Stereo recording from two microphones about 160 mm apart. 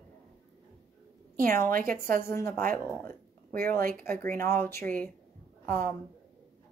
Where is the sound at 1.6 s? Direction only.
60° right (ahead or behind).